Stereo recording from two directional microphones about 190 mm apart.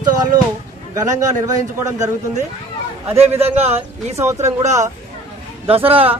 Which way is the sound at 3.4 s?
35° right (ahead or behind).